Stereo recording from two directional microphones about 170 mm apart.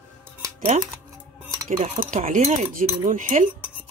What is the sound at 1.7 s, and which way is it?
Cutlery, 50° right (ahead or behind).